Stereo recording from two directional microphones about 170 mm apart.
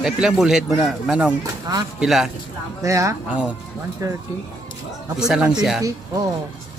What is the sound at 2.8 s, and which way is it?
Speech, 20° right (ahead or behind).